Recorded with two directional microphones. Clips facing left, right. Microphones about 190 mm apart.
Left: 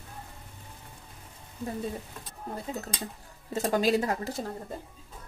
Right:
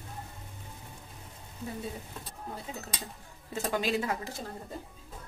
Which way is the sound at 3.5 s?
40° left (ahead or behind).